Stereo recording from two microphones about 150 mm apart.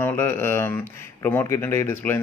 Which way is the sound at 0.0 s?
15° left (ahead or behind).